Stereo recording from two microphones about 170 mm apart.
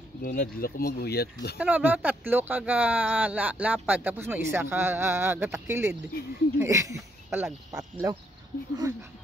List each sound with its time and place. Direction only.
0.2 s speech: 60° left (ahead or behind)
1.6 s speech: 10° right (ahead or behind)
7.2 s speech: centre (ahead or behind)
7.7 s speech: 20° right (ahead or behind)